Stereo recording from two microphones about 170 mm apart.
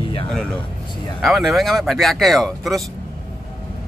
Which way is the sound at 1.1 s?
Centre (ahead or behind).